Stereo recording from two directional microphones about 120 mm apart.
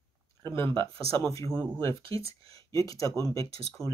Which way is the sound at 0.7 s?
45° right (ahead or behind).